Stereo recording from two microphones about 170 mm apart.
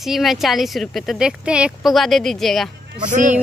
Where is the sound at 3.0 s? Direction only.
50° right (ahead or behind).